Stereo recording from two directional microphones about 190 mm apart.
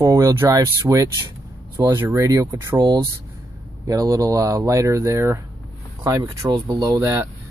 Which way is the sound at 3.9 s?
15° right (ahead or behind).